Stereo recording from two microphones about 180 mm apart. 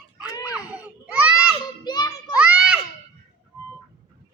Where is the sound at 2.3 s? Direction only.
5° right (ahead or behind).